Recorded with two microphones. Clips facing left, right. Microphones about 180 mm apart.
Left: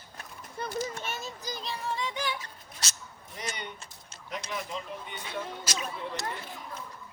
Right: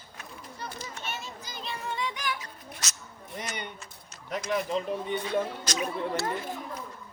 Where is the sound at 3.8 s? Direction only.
30° left (ahead or behind).